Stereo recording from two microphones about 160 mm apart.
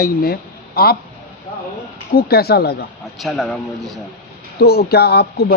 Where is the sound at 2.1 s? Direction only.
75° left (ahead or behind).